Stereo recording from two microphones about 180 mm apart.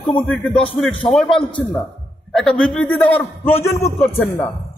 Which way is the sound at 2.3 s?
5° left (ahead or behind).